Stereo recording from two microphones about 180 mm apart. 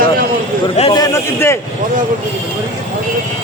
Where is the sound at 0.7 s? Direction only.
25° left (ahead or behind).